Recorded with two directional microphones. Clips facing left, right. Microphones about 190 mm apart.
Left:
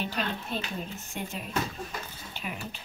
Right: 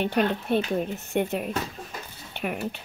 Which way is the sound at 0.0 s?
60° right (ahead or behind).